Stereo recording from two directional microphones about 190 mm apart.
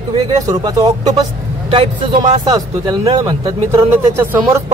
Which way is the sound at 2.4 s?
20° right (ahead or behind).